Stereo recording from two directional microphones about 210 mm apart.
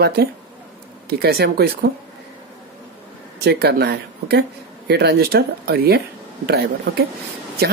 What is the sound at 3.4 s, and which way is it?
Speech, 50° right (ahead or behind).